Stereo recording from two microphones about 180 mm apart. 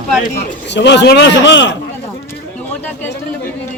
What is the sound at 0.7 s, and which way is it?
Speech, 75° left (ahead or behind).